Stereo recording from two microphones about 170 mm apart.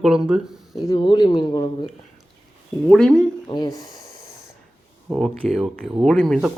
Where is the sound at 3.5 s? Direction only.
25° left (ahead or behind).